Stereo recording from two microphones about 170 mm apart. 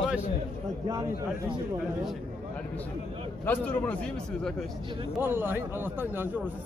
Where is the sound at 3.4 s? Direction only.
10° left (ahead or behind).